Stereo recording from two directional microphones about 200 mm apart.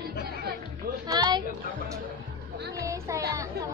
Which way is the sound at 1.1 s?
20° right (ahead or behind).